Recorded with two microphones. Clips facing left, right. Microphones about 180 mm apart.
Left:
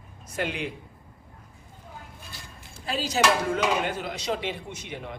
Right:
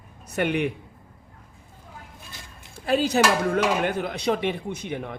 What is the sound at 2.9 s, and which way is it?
A man's voice, 60° right (ahead or behind).